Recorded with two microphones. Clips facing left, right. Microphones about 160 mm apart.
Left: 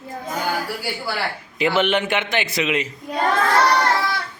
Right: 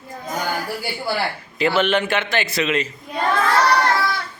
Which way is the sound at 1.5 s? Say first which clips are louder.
Right 1 dB; 15° left (ahead or behind).